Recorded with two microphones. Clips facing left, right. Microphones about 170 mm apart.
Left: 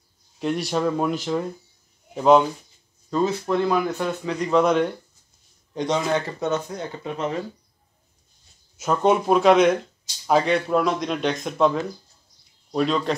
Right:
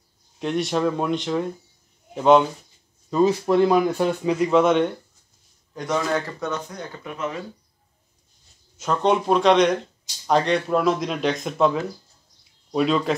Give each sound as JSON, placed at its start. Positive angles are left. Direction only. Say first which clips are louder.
{"t": 0.4, "sound": "speech", "louder": "right 1 dB", "side_deg": 0}
{"t": 3.1, "sound": "speech", "louder": "right 4 dB", "side_deg": -10}
{"t": 5.8, "sound": "speech", "louder": "left 1 dB", "side_deg": 20}
{"t": 8.7, "sound": "speech", "louder": "left 1 dB", "side_deg": 5}